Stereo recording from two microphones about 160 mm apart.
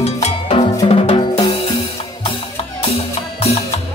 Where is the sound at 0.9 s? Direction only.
35° left (ahead or behind).